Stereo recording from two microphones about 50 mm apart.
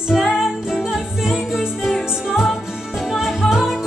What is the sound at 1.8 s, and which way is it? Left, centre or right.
Music, centre.